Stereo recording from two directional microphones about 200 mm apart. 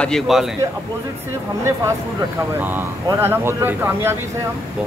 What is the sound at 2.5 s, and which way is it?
Speech, 10° right (ahead or behind).